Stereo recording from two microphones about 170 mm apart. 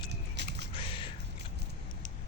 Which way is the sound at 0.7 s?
30° left (ahead or behind).